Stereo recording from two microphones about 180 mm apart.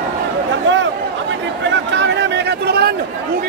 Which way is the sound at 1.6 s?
90° right.